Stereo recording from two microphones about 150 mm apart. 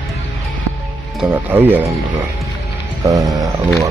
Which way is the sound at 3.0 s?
25° right (ahead or behind).